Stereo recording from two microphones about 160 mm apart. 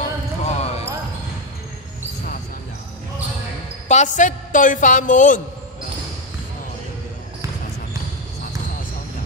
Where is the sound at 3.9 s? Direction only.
50° left (ahead or behind).